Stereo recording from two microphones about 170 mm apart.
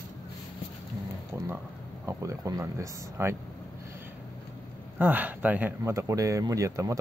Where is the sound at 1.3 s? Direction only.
15° right (ahead or behind).